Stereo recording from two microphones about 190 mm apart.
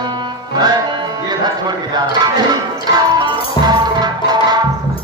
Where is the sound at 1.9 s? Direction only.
20° right (ahead or behind).